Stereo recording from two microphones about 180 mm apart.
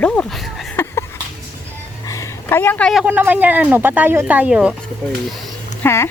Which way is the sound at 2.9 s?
5° right (ahead or behind).